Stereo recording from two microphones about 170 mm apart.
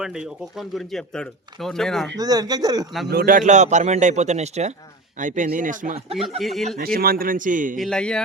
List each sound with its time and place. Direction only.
0.0 s speech: 5° right (ahead or behind)
2.1 s speech: 20° right (ahead or behind)
3.1 s a man's voice: 60° right (ahead or behind)
6.4 s speech: centre (ahead or behind)
6.7 s a man's voice: 60° right (ahead or behind)
7.8 s speech: 5° left (ahead or behind)